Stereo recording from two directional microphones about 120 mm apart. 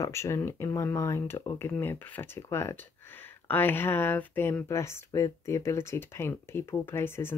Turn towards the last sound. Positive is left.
turn(degrees=20)  # may be behind; listen again after turning